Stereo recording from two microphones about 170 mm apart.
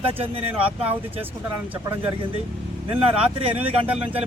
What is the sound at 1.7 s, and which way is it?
Speech, 10° right (ahead or behind).